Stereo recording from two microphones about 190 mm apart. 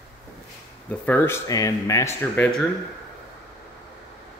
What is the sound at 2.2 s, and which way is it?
Speech, 5° left (ahead or behind).